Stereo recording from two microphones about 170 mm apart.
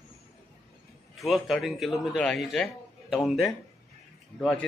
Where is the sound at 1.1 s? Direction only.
Centre (ahead or behind).